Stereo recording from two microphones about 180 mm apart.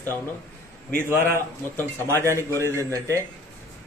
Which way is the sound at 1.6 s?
10° left (ahead or behind).